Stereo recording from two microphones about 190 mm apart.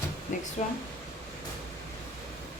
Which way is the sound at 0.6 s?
35° left (ahead or behind).